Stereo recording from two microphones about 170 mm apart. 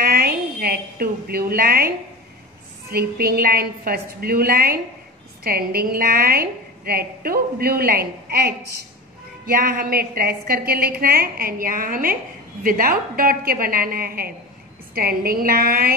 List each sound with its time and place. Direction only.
0.0 s a sound: 60° right (ahead or behind)
2.9 s a woman's voice: 65° right (ahead or behind)
9.5 s a woman's voice: 55° right (ahead or behind)